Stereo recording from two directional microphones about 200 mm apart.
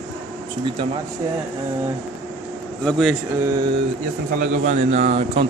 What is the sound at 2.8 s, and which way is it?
Speech, centre (ahead or behind).